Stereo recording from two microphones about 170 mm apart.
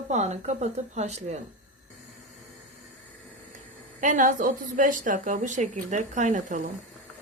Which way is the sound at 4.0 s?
50° right (ahead or behind).